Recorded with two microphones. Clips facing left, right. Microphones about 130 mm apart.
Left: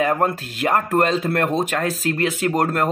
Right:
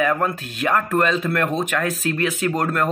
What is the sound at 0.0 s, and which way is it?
Speech, 35° left (ahead or behind).